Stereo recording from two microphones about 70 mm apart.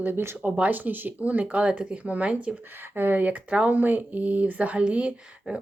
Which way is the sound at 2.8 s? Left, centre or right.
Right.